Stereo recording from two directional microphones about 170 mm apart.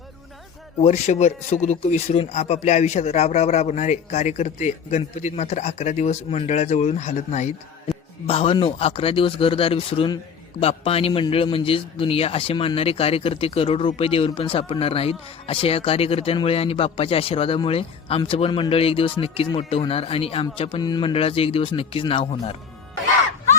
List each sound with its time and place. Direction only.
0.8 s a man's voice: 40° left (ahead or behind)